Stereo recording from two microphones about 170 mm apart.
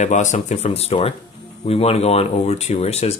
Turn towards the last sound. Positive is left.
turn(degrees=40)  # may be behind; listen again after turning